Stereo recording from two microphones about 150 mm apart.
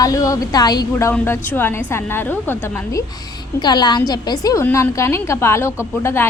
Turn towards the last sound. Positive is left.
turn(degrees=15)  # may be behind; listen again after turning